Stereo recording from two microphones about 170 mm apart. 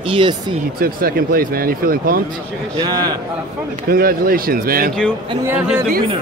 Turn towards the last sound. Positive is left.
turn(degrees=-10)  # may be behind; listen again after turning